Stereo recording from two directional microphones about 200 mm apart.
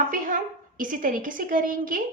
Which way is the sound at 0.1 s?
40° right (ahead or behind).